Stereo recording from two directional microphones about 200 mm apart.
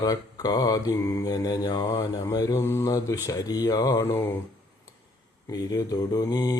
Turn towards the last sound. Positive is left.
turn(degrees=20)  # may be behind; listen again after turning